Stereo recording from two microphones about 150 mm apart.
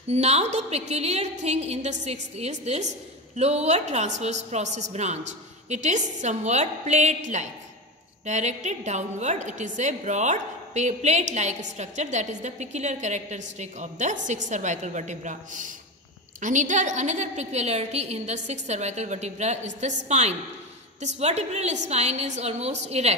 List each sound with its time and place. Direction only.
0.1 s a woman's voice: 45° right (ahead or behind)